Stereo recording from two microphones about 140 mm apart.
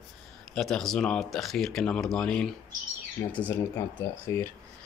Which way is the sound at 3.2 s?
25° left (ahead or behind).